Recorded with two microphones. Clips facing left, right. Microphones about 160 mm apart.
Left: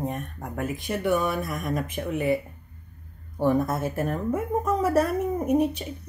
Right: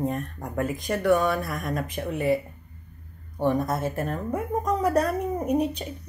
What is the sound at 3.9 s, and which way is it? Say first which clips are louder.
Speech: left 2 dB; 5° left (ahead or behind).